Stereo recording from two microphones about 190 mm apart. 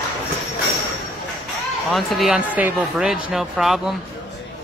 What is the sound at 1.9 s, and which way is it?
Speech, centre (ahead or behind).